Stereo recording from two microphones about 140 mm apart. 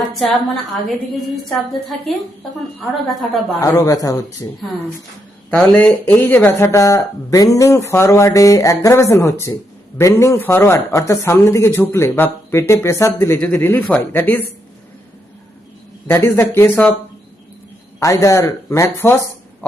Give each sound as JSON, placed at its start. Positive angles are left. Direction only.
{"t": 0.0, "sound": "a woman's voice", "side_deg": 0}
{"t": 3.6, "sound": "speech", "side_deg": 25}
{"t": 5.5, "sound": "speech", "side_deg": 10}
{"t": 16.0, "sound": "speech", "side_deg": 15}
{"t": 18.0, "sound": "speech", "side_deg": 20}